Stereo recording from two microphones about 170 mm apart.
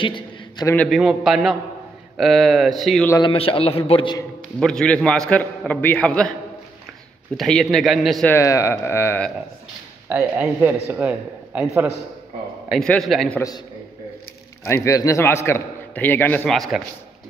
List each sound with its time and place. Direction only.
0.0 s a sound: 30° left (ahead or behind)
0.8 s a man's voice: centre (ahead or behind)
3.2 s a man's voice: 30° left (ahead or behind)
4.6 s a man's voice: 5° left (ahead or behind)
7.3 s a man's voice: 5° left (ahead or behind)
8.3 s a man's voice: 15° left (ahead or behind)
10.0 s a man's voice: 10° right (ahead or behind)
12.6 s a man's voice: 5° left (ahead or behind)
14.7 s a man's voice: 15° left (ahead or behind)
16.4 s a man's voice: centre (ahead or behind)